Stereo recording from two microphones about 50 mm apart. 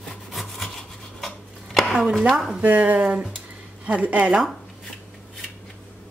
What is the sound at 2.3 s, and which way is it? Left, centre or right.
Speech, centre.